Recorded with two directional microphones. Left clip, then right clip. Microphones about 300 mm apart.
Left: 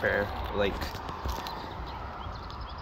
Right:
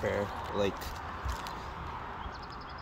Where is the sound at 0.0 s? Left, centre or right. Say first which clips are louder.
Left 4 dB; centre.